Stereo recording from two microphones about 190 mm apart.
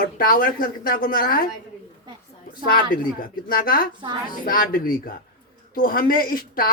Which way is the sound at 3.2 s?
50° left (ahead or behind).